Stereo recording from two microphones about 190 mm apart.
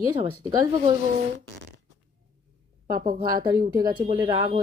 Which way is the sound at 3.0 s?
50° right (ahead or behind).